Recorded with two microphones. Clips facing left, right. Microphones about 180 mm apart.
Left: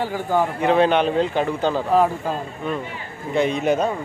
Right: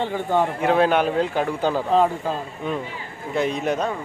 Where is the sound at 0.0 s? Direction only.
5° left (ahead or behind).